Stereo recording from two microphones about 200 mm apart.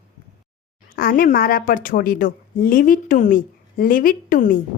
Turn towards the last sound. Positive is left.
turn(degrees=45)  # may be behind; listen again after turning